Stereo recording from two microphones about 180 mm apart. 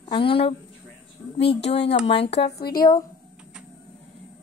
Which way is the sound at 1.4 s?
70° left (ahead or behind).